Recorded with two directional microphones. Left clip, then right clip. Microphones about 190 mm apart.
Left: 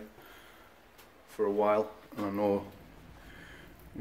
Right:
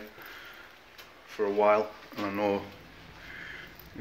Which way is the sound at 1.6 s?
15° left (ahead or behind).